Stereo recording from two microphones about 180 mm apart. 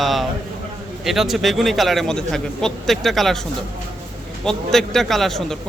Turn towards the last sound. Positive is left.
turn(degrees=0)  # may be behind; listen again after turning